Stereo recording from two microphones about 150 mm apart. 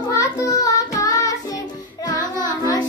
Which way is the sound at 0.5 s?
20° left (ahead or behind).